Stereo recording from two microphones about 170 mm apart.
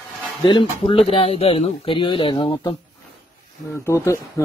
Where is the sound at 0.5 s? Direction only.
30° left (ahead or behind).